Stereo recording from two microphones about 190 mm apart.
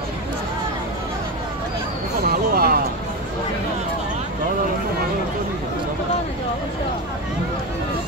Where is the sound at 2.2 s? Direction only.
55° right (ahead or behind).